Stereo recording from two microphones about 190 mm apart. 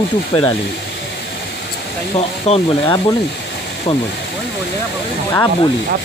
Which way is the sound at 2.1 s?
35° left (ahead or behind).